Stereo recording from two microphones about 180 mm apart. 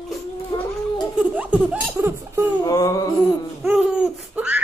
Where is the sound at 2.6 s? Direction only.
20° left (ahead or behind).